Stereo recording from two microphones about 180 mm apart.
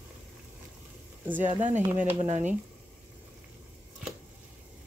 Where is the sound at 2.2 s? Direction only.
40° right (ahead or behind).